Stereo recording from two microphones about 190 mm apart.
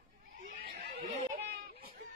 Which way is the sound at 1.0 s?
35° right (ahead or behind).